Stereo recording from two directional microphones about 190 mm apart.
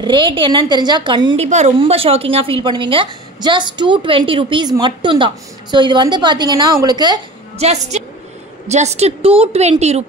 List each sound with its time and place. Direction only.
0.0 s a woman's voice: 25° right (ahead or behind)
7.5 s a woman's voice: 35° right (ahead or behind)